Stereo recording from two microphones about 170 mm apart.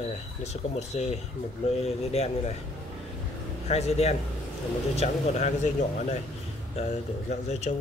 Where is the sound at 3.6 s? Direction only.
40° left (ahead or behind).